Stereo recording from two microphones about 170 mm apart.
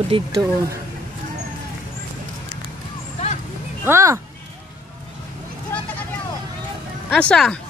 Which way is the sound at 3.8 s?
15° right (ahead or behind).